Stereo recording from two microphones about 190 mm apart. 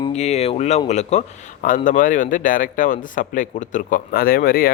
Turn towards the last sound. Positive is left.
turn(degrees=50)  # may be behind; listen again after turning